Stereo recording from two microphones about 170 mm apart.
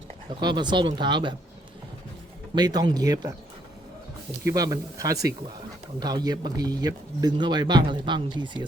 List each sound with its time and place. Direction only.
0.3 s speech: 25° right (ahead or behind)
2.6 s speech: 25° right (ahead or behind)
4.4 s speech: 20° right (ahead or behind)